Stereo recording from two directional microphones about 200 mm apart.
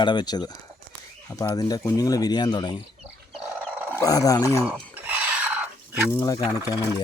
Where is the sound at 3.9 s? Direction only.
15° left (ahead or behind).